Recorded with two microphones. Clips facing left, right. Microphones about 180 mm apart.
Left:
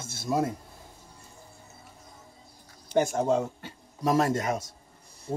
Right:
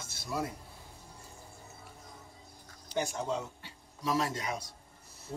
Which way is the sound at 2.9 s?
50° left (ahead or behind).